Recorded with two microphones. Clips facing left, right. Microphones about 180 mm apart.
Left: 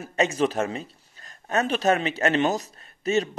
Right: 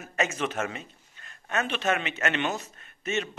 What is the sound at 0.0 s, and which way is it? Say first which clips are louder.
A man's voice: left 6 dB; 30° left (ahead or behind).